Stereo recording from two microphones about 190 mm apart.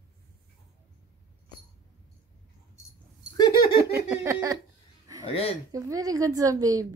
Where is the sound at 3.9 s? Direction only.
15° right (ahead or behind).